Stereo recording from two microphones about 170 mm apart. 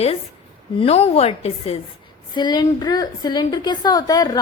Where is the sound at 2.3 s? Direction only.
25° left (ahead or behind).